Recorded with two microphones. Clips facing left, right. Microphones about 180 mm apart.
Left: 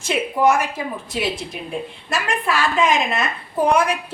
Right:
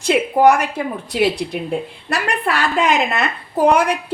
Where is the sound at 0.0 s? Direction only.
65° right (ahead or behind).